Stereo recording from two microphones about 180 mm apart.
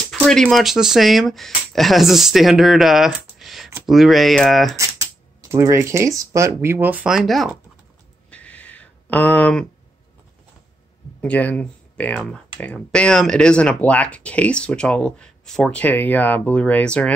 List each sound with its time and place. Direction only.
0.1 s speech: 5° left (ahead or behind)
5.4 s speech: 15° right (ahead or behind); by 7.5 s centre (ahead or behind)
8.3 s a sound: 10° left (ahead or behind)
11.1 s speech: 10° left (ahead or behind)